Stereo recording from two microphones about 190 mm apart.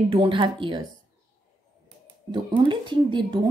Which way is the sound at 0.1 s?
25° right (ahead or behind).